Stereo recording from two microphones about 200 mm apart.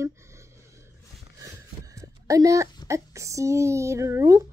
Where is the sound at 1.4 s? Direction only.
15° right (ahead or behind).